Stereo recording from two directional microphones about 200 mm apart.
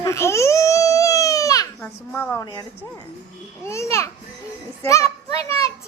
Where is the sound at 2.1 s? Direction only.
10° left (ahead or behind).